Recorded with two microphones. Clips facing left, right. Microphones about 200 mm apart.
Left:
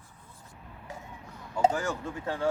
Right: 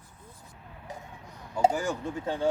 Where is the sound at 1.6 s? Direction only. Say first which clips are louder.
Right 1 dB; 15° right (ahead or behind).